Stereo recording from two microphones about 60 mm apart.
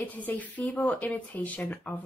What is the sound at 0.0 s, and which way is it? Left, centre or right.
A woman's voice, left.